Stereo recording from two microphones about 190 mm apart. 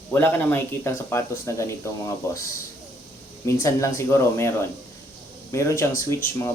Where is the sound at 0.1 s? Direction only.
10° left (ahead or behind).